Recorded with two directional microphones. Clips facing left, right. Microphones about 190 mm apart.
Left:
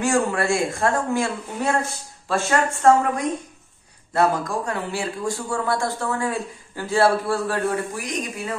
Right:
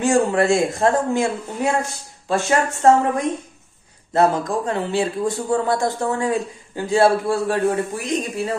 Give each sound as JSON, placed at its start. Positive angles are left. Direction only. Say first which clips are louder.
{"t": 0.0, "sound": "speech", "louder": "right 4 dB", "side_deg": -20}
{"t": 4.1, "sound": "speech", "louder": "right 3 dB", "side_deg": -20}